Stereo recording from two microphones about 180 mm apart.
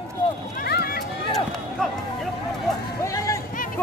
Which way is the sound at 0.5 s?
60° left (ahead or behind).